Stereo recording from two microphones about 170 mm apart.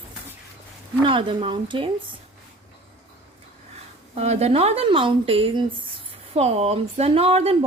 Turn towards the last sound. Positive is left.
turn(degrees=-35)  # may be behind; listen again after turning